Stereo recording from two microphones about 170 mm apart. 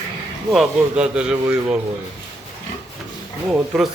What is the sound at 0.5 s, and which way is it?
Speech, 5° right (ahead or behind).